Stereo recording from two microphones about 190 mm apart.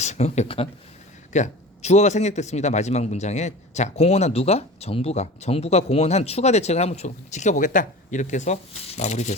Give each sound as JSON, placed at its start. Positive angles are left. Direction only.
{"t": 0.0, "sound": "a man's voice", "side_deg": 35}